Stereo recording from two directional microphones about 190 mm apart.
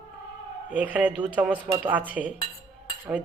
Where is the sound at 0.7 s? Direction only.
10° right (ahead or behind).